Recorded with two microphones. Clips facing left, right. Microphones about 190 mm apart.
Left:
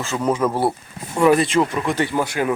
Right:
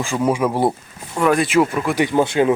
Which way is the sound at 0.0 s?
10° right (ahead or behind).